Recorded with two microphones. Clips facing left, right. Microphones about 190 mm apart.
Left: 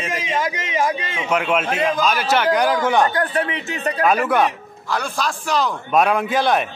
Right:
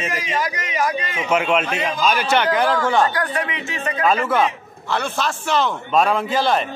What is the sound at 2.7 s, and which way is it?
Speech, 15° left (ahead or behind).